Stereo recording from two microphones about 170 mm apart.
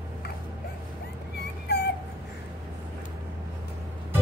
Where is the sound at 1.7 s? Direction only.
75° left (ahead or behind).